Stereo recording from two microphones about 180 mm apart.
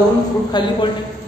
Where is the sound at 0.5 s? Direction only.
25° left (ahead or behind).